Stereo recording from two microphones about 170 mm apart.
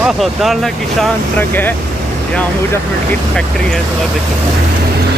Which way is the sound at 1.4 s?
10° left (ahead or behind).